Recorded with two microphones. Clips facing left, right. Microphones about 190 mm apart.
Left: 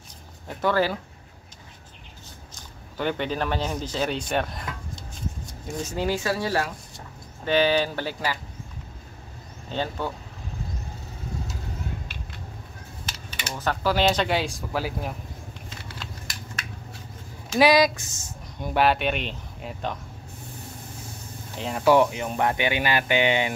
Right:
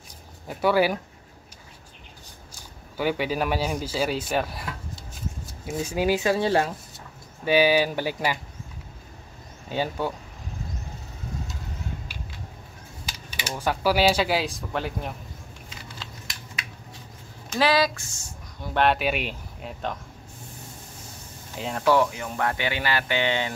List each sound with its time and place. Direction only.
0.5 s speech: 10° right (ahead or behind)
3.0 s speech: 5° right (ahead or behind); by 6.7 s 25° right (ahead or behind)
7.4 s speech: 10° right (ahead or behind)
9.7 s speech: 10° right (ahead or behind)
13.6 s speech: 10° right (ahead or behind)
17.5 s speech: 15° left (ahead or behind)
18.8 s speech: centre (ahead or behind)
21.5 s speech: centre (ahead or behind)
21.8 s speech: 20° left (ahead or behind)